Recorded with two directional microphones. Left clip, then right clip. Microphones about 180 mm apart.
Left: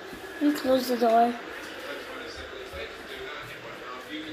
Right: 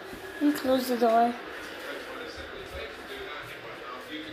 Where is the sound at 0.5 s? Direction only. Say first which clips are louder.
Left 4 dB; 10° right (ahead or behind).